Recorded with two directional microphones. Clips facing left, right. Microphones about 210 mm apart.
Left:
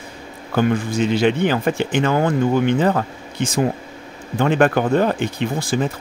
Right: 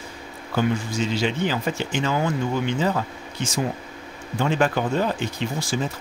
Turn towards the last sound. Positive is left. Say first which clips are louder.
# left 5 dB
turn(degrees=55)  # may be behind; listen again after turning